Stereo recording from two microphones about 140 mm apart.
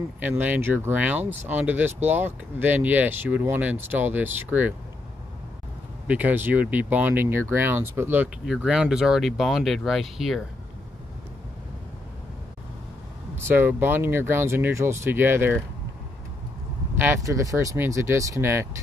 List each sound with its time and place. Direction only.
0.2 s speech: 15° right (ahead or behind)
6.0 s speech: 10° right (ahead or behind)
13.4 s speech: 15° right (ahead or behind)
17.0 s speech: 20° right (ahead or behind)